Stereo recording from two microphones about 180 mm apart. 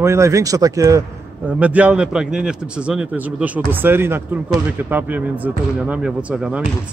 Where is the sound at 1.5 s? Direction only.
5° right (ahead or behind).